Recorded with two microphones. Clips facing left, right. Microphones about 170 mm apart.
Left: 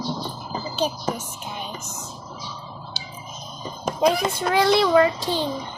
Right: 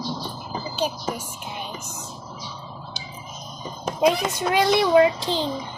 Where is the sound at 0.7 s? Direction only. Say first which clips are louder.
Left 2 dB; 10° right (ahead or behind).